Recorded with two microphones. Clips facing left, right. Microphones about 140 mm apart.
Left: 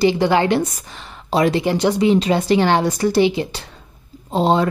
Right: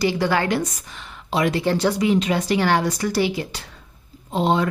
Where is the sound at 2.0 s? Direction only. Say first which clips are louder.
Left 4 dB; 30° left (ahead or behind).